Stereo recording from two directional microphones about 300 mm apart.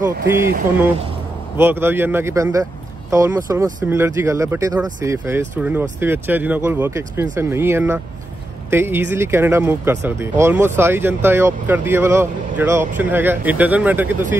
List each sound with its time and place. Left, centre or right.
0.1 s speech: right
1.6 s speech: centre